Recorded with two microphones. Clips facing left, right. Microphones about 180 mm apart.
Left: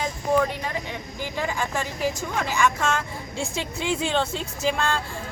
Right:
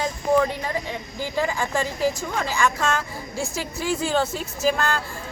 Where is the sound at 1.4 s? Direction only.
10° right (ahead or behind).